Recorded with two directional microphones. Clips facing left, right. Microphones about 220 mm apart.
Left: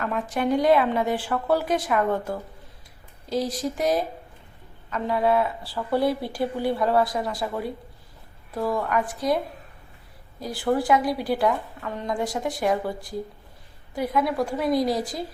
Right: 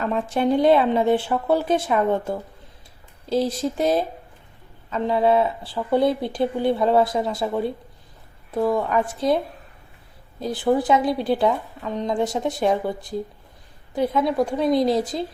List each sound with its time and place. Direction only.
0.0 s speech: 25° right (ahead or behind)
10.4 s speech: 20° right (ahead or behind)